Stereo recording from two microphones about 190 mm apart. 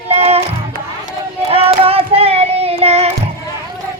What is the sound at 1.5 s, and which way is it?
Child singing, 30° right (ahead or behind).